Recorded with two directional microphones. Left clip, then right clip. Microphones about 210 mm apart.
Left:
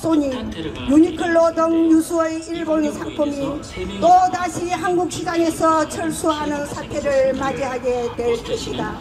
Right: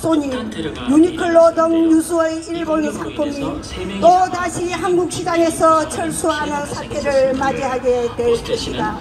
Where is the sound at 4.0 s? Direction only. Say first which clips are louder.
Right 1 dB; 15° left (ahead or behind).